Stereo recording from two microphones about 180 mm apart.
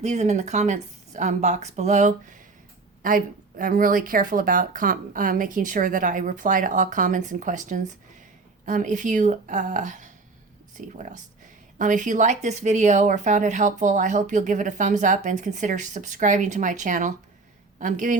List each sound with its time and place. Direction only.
0.0 s a woman's voice: 40° right (ahead or behind)